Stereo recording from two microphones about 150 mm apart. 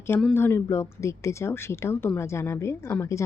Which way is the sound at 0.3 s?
15° left (ahead or behind).